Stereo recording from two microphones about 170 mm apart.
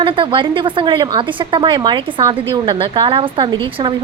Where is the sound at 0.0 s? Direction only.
30° right (ahead or behind).